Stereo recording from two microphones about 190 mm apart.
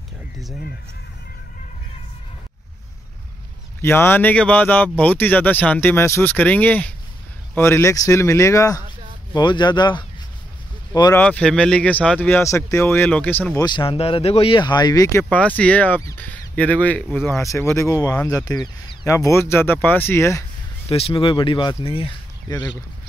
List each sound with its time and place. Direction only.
3.8 s speech: 10° left (ahead or behind)
11.1 s speech: 5° left (ahead or behind)
13.7 s speech: 25° left (ahead or behind)
20.9 s speech: 25° left (ahead or behind)